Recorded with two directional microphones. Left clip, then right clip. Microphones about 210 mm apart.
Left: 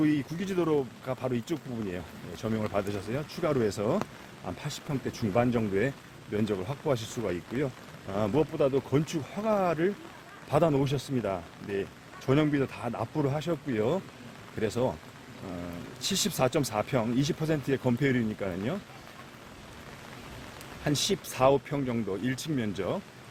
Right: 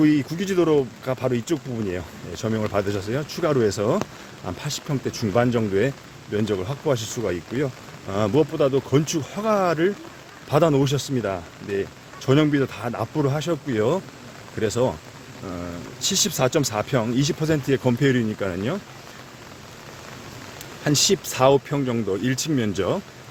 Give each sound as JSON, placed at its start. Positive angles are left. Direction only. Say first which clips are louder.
{"t": 0.0, "sound": "speech", "louder": "right 8 dB", "side_deg": -25}
{"t": 16.0, "sound": "speech", "louder": "right 6 dB", "side_deg": 0}
{"t": 20.8, "sound": "speech", "louder": "right 9 dB", "side_deg": -15}